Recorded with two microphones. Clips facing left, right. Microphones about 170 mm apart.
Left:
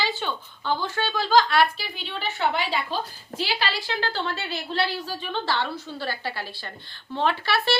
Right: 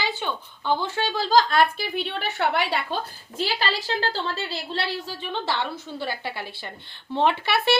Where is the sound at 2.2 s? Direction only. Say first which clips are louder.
Left 1 dB; 65° right (ahead or behind).